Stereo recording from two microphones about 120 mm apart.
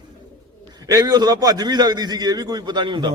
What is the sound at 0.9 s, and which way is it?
A man's voice, 30° right (ahead or behind).